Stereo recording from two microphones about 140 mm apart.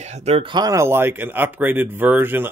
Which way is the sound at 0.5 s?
25° right (ahead or behind).